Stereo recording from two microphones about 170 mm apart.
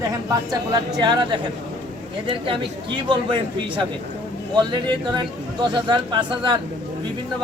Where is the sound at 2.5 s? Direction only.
30° right (ahead or behind).